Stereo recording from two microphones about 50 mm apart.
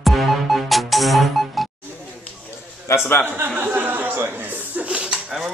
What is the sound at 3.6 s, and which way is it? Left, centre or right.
Chuckle, right.